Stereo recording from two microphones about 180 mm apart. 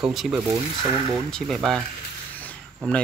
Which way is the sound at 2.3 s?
5° left (ahead or behind).